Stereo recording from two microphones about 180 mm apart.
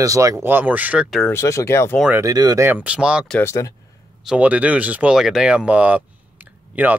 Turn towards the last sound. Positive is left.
turn(degrees=-10)  # may be behind; listen again after turning